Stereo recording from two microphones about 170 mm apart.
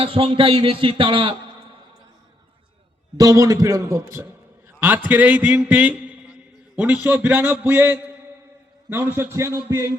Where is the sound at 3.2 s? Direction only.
20° right (ahead or behind).